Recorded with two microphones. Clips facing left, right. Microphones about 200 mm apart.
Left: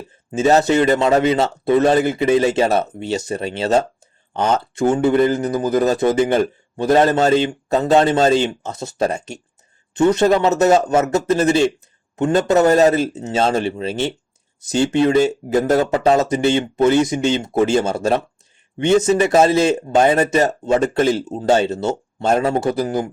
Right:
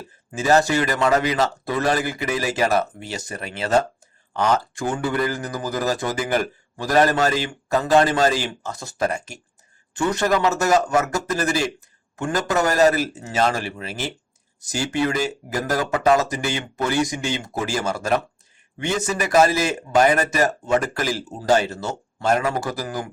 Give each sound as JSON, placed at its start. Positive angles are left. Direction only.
{"t": 0.3, "sound": "a man's voice", "side_deg": 25}